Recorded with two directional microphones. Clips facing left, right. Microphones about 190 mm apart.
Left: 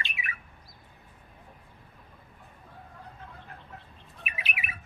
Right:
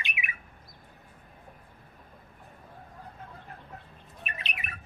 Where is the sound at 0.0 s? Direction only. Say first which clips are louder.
Even; 15° right (ahead or behind).